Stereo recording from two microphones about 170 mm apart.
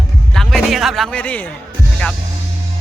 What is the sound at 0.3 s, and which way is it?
A man's voice, centre (ahead or behind).